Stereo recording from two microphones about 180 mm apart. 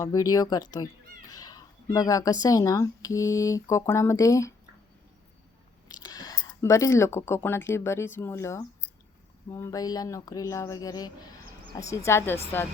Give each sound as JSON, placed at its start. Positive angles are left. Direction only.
{"t": 0.0, "sound": "speech", "side_deg": 20}
{"t": 5.9, "sound": "speech", "side_deg": 20}